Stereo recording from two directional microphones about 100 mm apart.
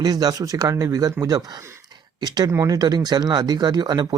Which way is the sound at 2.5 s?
30° right (ahead or behind).